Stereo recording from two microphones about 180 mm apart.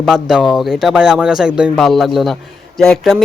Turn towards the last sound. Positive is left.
turn(degrees=0)  # may be behind; listen again after turning